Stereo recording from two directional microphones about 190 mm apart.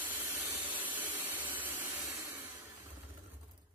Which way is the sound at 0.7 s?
25° right (ahead or behind).